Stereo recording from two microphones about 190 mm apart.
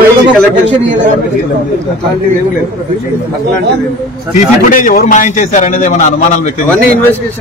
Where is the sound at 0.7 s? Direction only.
70° right (ahead or behind).